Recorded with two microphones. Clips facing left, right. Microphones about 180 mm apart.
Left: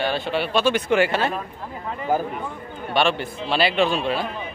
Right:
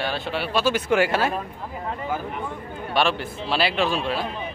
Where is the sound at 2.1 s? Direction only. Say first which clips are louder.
Left 8 dB; 40° left (ahead or behind).